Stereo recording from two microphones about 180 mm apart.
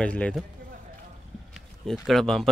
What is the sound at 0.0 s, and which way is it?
Speech, 5° left (ahead or behind).